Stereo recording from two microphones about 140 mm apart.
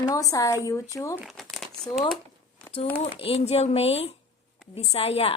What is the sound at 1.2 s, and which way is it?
Speech, centre (ahead or behind).